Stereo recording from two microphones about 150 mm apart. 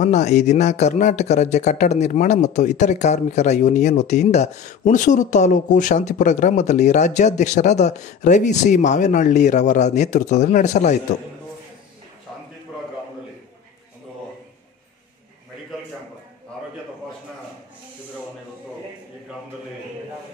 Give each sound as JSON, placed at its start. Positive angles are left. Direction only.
{"t": 0.0, "sound": "speech", "side_deg": 50}